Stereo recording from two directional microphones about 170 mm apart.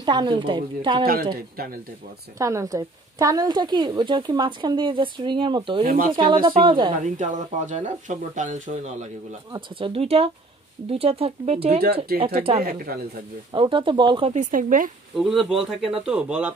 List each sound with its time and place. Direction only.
0.0 s a woman's voice: 25° right (ahead or behind)
1.0 s speech: 60° right (ahead or behind)
2.3 s a woman's voice: 20° right (ahead or behind)
5.9 s speech: 55° right (ahead or behind)
6.1 s a woman's voice: 30° right (ahead or behind)
7.0 s speech: 45° right (ahead or behind)
9.5 s speech: 30° right (ahead or behind)
12.6 s speech: 60° right (ahead or behind)
13.5 s a woman's voice: 30° right (ahead or behind)
14.3 s speech: 50° right (ahead or behind)
15.1 s speech: centre (ahead or behind)